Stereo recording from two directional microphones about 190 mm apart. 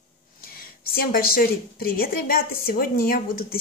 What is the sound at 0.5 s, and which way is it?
Speech, 50° left (ahead or behind).